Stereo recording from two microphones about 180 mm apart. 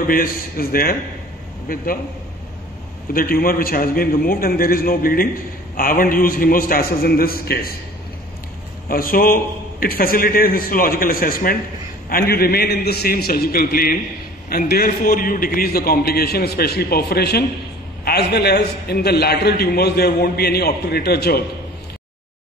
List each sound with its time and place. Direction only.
0.0 s a man's voice: 55° left (ahead or behind)
3.1 s a man's voice: 55° left (ahead or behind)
8.8 s a man's voice: 55° left (ahead or behind)